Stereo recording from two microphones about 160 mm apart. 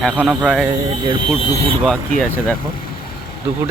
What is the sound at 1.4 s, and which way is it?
Speech, 40° right (ahead or behind).